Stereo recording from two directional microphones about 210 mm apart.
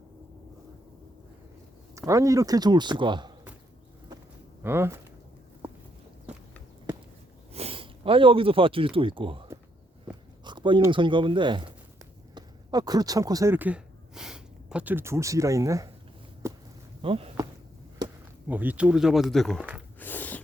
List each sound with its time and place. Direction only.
2.0 s speech: 15° right (ahead or behind)
4.6 s speech: 10° right (ahead or behind)
7.5 s speech: 25° right (ahead or behind)
16.4 s a sound: 15° right (ahead or behind)
17.0 s a sound: 25° right (ahead or behind)
18.0 s chop: 20° right (ahead or behind)
18.4 s speech: 10° right (ahead or behind)
20.0 s snort: 10° left (ahead or behind)